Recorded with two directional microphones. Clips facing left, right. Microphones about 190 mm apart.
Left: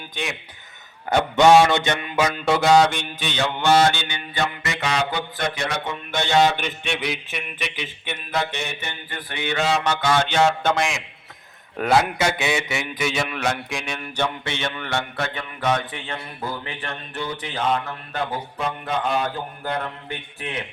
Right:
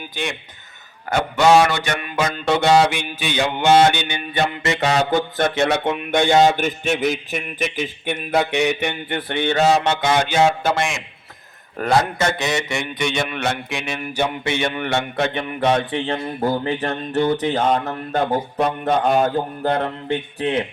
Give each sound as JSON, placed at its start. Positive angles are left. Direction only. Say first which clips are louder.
{"t": 0.1, "sound": "speech", "louder": "right 2 dB", "side_deg": 0}
{"t": 1.1, "sound": "a sound", "louder": "even", "side_deg": 20}
{"t": 2.1, "sound": "mantra", "louder": "right 1 dB", "side_deg": 5}
{"t": 4.4, "sound": "music", "louder": "right 6 dB", "side_deg": -30}
{"t": 4.9, "sound": "a man's voice", "louder": "right 4 dB", "side_deg": -45}
{"t": 5.6, "sound": "a man's voice", "louder": "right 8 dB", "side_deg": -60}
{"t": 9.0, "sound": "a man's voice", "louder": "right 6 dB", "side_deg": -25}
{"t": 9.5, "sound": "music", "louder": "right 6 dB", "side_deg": -40}
{"t": 9.8, "sound": "a man's voice", "louder": "right 2 dB", "side_deg": -20}
{"t": 10.2, "sound": "mantra", "louder": "right 2 dB", "side_deg": -10}
{"t": 11.8, "sound": "a man's voice", "louder": "right 1 dB", "side_deg": 5}